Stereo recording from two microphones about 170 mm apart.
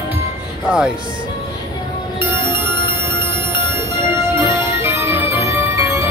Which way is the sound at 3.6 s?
15° right (ahead or behind).